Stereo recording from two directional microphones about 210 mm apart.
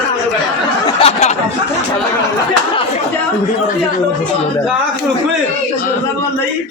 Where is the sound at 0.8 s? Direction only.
30° left (ahead or behind).